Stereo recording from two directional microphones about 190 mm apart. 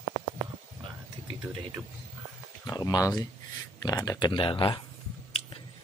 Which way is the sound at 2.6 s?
20° left (ahead or behind).